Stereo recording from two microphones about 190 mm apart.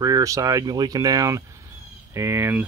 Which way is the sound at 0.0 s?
20° right (ahead or behind).